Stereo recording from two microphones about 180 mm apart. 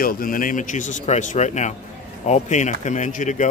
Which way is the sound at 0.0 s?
50° left (ahead or behind).